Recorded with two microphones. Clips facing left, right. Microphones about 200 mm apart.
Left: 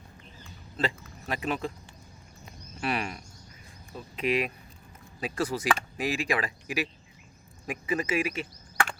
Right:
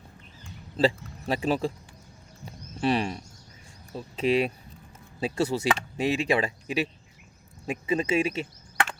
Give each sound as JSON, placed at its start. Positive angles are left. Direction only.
{"t": 0.8, "sound": "a man's voice", "side_deg": -30}
{"t": 2.8, "sound": "speech", "side_deg": -30}